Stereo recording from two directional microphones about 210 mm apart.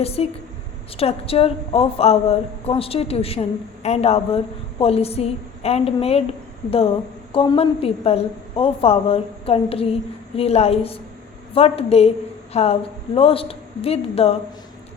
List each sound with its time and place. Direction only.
0.0 s a woman's voice: 30° left (ahead or behind)